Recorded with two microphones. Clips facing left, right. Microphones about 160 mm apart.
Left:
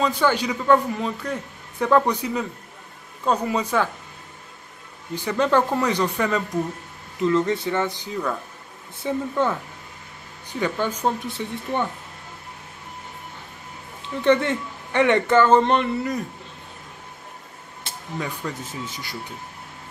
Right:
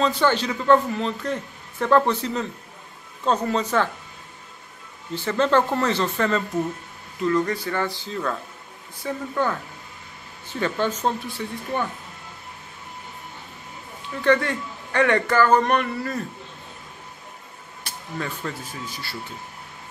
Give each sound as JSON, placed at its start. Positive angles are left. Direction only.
{"t": 0.0, "sound": "speech", "side_deg": 10}
{"t": 5.1, "sound": "speech", "side_deg": 15}
{"t": 14.0, "sound": "speech", "side_deg": 20}
{"t": 17.8, "sound": "speech", "side_deg": 15}